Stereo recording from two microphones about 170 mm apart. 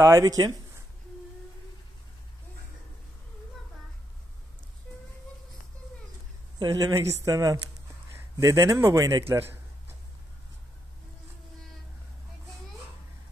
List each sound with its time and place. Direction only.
0.0 s speech: 20° right (ahead or behind)
6.6 s a man's voice: 20° right (ahead or behind)
9.3 s a sound: 15° right (ahead or behind)